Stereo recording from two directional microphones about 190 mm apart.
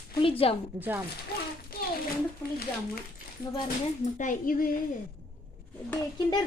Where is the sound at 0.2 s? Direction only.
30° left (ahead or behind).